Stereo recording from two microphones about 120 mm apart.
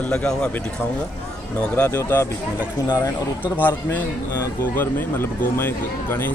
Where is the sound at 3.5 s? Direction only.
15° left (ahead or behind).